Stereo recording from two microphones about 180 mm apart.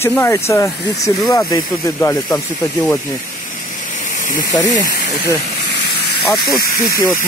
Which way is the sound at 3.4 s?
45° left (ahead or behind).